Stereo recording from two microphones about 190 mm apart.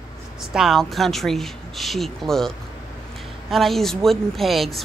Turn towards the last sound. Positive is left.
turn(degrees=0)  # may be behind; listen again after turning